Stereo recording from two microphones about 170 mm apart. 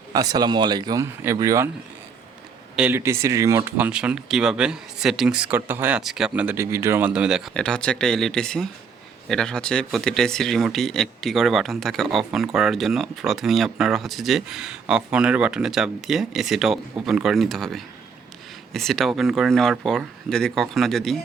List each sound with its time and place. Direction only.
0.1 s speech: 20° right (ahead or behind)
2.7 s speech: 10° right (ahead or behind)